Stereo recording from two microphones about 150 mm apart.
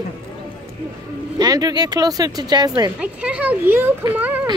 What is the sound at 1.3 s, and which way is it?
Speech, 25° right (ahead or behind).